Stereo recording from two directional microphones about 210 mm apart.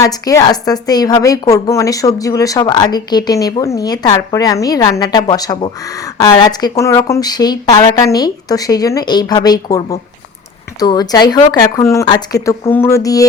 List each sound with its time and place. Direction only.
0.0 s a woman's voice: 15° left (ahead or behind)